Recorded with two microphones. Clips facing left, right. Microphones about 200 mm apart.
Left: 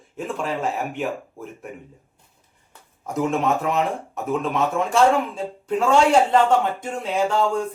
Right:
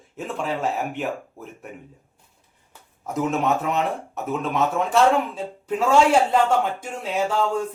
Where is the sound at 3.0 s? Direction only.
Centre (ahead or behind).